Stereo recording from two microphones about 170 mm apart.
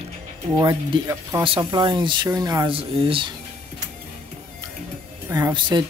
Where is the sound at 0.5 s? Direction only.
25° right (ahead or behind).